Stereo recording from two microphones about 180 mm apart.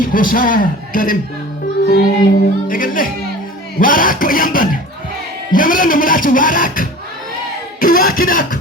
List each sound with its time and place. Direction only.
0.0 s speech: 50° left (ahead or behind)